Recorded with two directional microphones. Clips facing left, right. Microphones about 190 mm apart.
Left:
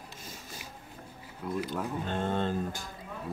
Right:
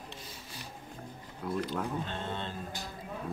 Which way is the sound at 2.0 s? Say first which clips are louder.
Left 7 dB; 50° left (ahead or behind).